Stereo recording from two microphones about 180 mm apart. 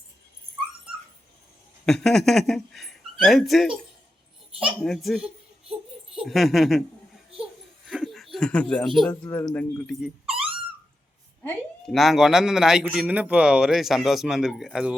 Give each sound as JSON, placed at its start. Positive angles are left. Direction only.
{"t": 1.9, "sound": "speech", "side_deg": 5}
{"t": 4.8, "sound": "speech", "side_deg": 0}
{"t": 7.9, "sound": "a sound", "side_deg": 0}
{"t": 9.3, "sound": "speech", "side_deg": 10}
{"t": 10.2, "sound": "a sound", "side_deg": -30}
{"t": 11.4, "sound": "speech", "side_deg": 0}